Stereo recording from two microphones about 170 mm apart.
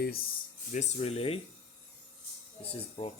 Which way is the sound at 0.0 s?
60° left (ahead or behind).